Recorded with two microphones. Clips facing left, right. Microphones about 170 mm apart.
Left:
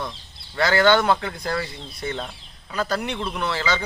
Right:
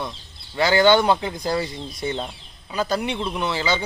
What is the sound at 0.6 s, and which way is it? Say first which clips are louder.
Speech: right 2 dB; 30° right (ahead or behind).